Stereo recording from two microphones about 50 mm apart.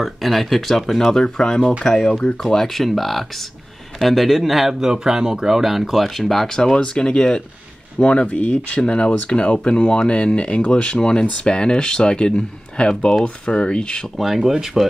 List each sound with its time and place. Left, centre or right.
0.0 s speech: centre
1.6 s speech: left
1.9 s speech: centre
14.1 s speech: centre